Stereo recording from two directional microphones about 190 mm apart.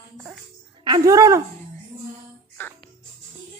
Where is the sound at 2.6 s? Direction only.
10° left (ahead or behind).